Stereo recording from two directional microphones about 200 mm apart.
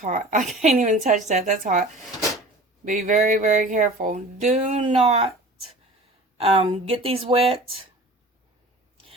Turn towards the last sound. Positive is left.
turn(degrees=-30)  # may be behind; listen again after turning